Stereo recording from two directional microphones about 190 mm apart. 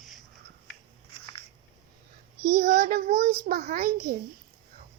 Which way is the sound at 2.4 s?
45° right (ahead or behind).